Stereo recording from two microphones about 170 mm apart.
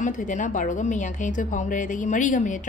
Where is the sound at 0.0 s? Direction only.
50° left (ahead or behind).